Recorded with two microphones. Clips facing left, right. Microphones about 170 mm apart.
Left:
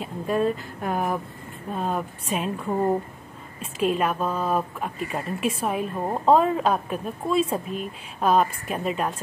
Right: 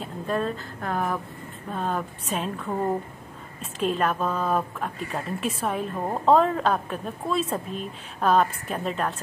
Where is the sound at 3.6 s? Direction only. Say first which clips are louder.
Left 2 dB; 10° left (ahead or behind).